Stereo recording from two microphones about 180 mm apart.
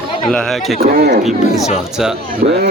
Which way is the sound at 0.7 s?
60° right (ahead or behind).